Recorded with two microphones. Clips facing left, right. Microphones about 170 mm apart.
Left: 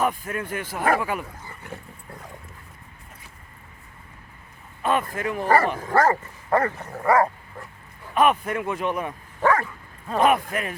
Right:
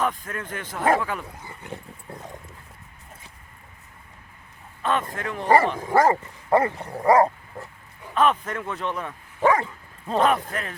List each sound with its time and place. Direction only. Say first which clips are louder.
0.0 s speech: left 2 dB; 10° left (ahead or behind)
1.5 s dog: right 1 dB; 20° right (ahead or behind)
4.8 s a man's voice: left 2 dB; 10° left (ahead or behind)
5.8 s dog: right 1 dB; 15° right (ahead or behind)
8.1 s speech: left 2 dB; 10° left (ahead or behind)
9.4 s dog: right 1 dB; 15° right (ahead or behind)
10.2 s speech: left 1 dB; 10° left (ahead or behind)